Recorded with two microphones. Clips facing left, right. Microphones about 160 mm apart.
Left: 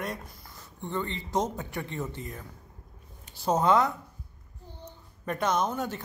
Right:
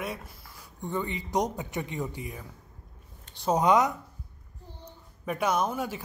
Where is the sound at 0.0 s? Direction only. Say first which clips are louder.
Even; 5° right (ahead or behind).